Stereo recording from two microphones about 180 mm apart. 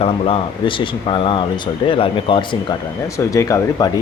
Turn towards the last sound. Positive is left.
turn(degrees=20)  # may be behind; listen again after turning